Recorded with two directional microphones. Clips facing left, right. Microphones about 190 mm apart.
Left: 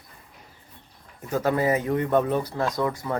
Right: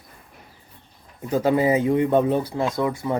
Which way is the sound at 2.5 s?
10° right (ahead or behind).